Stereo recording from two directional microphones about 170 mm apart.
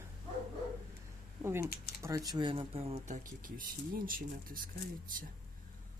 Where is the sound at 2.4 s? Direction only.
30° right (ahead or behind); by 4.6 s 55° right (ahead or behind).